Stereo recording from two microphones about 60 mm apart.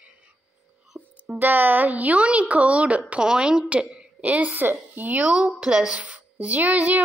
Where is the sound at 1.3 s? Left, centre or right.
Right.